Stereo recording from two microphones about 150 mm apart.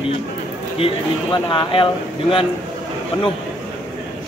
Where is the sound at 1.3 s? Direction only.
35° left (ahead or behind).